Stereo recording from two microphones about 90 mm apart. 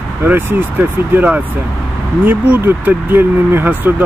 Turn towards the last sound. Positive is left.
turn(degrees=-20)  # may be behind; listen again after turning